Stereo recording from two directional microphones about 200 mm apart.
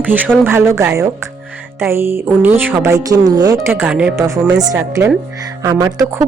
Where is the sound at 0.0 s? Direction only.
10° right (ahead or behind).